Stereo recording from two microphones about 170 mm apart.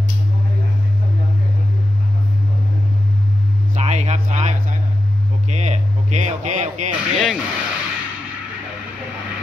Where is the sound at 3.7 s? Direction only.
40° right (ahead or behind).